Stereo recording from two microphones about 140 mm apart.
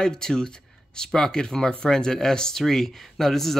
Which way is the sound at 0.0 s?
5° left (ahead or behind).